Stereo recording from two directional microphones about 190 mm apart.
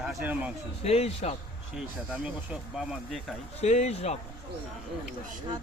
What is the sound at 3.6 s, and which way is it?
Speech, 35° left (ahead or behind).